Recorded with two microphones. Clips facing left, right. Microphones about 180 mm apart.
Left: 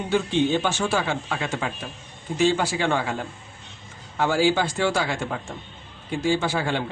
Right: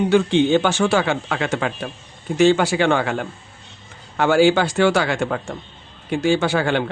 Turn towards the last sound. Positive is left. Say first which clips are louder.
# right 6 dB
turn(degrees=-70)  # may be behind; listen again after turning